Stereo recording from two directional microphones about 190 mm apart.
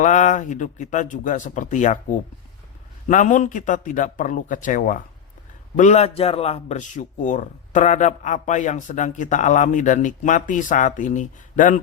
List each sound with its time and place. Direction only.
0.0 s a man's voice: 40° left (ahead or behind)